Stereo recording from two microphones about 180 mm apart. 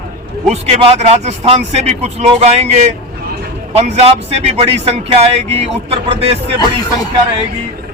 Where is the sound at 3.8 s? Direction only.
35° right (ahead or behind).